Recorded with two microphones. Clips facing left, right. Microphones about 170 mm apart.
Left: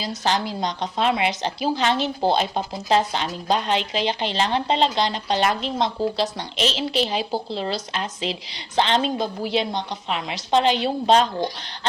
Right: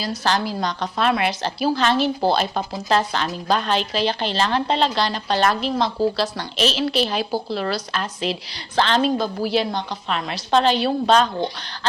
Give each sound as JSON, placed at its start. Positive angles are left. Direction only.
{"t": 0.0, "sound": "speech", "side_deg": 20}